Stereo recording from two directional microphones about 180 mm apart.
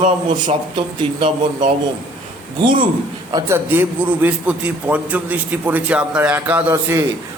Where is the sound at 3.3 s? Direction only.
15° right (ahead or behind).